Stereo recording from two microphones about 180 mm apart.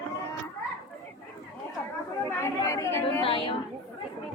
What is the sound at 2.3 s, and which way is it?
Chatter, 15° left (ahead or behind).